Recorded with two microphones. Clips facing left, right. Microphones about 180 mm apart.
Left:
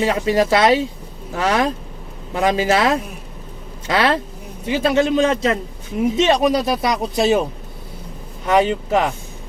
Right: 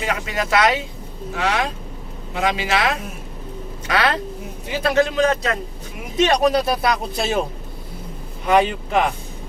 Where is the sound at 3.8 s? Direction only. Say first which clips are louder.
Left 3 dB; 30° left (ahead or behind).